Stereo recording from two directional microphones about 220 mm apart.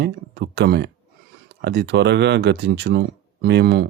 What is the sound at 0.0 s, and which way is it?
Speech, 50° right (ahead or behind).